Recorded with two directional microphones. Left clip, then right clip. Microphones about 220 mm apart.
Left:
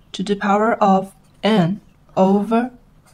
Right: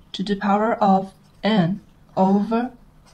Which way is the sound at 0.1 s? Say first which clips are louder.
Left 3 dB; 25° left (ahead or behind).